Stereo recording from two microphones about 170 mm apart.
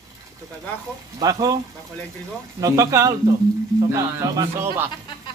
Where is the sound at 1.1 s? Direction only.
25° right (ahead or behind).